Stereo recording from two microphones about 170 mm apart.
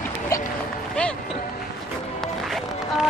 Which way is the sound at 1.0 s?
5° left (ahead or behind).